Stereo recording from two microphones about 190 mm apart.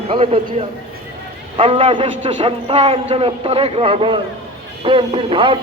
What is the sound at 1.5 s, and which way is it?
A man's voice, 25° right (ahead or behind).